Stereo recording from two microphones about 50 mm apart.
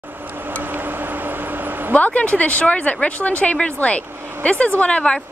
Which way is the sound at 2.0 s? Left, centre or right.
Left.